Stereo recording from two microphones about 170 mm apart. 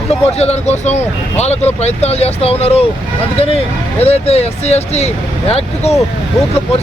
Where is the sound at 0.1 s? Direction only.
35° left (ahead or behind).